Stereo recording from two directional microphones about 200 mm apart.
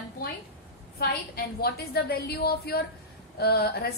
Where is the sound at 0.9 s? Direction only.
50° left (ahead or behind).